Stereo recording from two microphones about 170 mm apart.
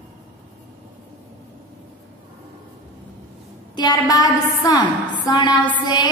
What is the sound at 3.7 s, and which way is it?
A woman's voice, 25° left (ahead or behind).